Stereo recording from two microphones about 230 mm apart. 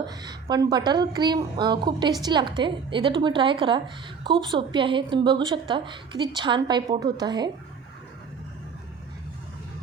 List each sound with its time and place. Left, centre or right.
0.2 s a woman's voice: centre